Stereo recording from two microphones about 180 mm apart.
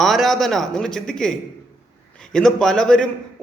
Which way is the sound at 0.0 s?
Centre (ahead or behind).